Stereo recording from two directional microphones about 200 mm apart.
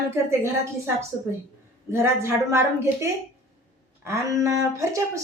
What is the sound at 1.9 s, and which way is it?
Speech, 15° right (ahead or behind).